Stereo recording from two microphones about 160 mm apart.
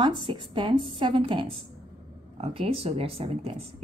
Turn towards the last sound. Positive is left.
turn(degrees=-40)  # may be behind; listen again after turning